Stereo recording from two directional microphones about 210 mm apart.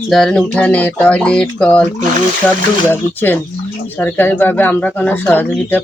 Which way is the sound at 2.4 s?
10° left (ahead or behind).